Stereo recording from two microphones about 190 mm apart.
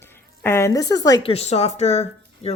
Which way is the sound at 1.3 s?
35° left (ahead or behind).